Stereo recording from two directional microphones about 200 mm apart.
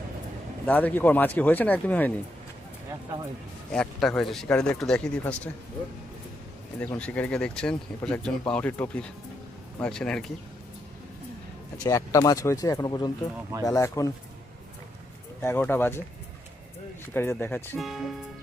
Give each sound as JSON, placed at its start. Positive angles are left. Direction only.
{"t": 0.6, "sound": "speech", "side_deg": 10}
{"t": 3.7, "sound": "speech", "side_deg": 5}
{"t": 6.7, "sound": "speech", "side_deg": 5}
{"t": 11.8, "sound": "speech", "side_deg": 15}
{"t": 15.4, "sound": "speech", "side_deg": 10}
{"t": 17.2, "sound": "speech", "side_deg": 10}
{"t": 17.7, "sound": "speech", "side_deg": 0}